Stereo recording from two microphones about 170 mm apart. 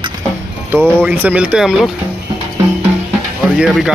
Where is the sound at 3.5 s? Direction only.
5° right (ahead or behind).